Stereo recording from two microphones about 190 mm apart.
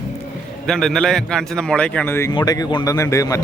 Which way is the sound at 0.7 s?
Centre (ahead or behind).